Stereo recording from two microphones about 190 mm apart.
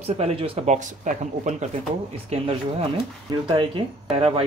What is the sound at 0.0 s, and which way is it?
Speech, 35° right (ahead or behind).